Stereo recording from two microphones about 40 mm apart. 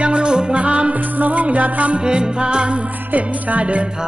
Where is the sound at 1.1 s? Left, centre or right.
Right.